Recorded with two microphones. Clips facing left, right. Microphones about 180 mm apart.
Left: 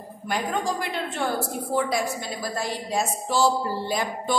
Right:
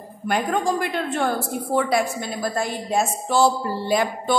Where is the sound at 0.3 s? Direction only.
55° right (ahead or behind).